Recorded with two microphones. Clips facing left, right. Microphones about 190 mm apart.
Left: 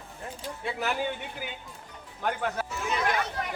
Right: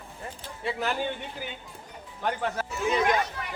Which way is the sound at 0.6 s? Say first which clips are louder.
Right 2 dB; centre (ahead or behind).